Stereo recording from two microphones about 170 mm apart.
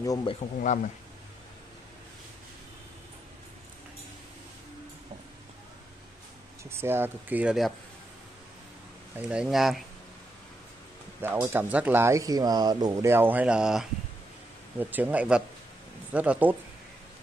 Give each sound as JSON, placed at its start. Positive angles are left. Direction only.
{"t": 0.0, "sound": "speech", "side_deg": 20}
{"t": 6.6, "sound": "speech", "side_deg": -15}
{"t": 9.1, "sound": "speech", "side_deg": -5}
{"t": 11.1, "sound": "speech", "side_deg": -15}